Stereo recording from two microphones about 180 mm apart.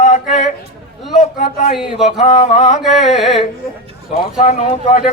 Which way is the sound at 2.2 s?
40° left (ahead or behind).